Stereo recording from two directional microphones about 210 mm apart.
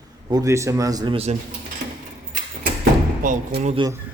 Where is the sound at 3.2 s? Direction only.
40° right (ahead or behind).